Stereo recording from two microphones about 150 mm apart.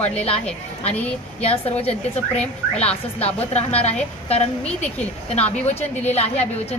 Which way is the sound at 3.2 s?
45° left (ahead or behind).